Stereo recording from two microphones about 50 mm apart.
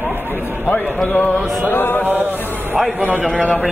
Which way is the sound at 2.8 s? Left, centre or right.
Centre.